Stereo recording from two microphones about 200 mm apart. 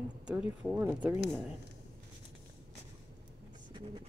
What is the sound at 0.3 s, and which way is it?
Speech, 5° right (ahead or behind).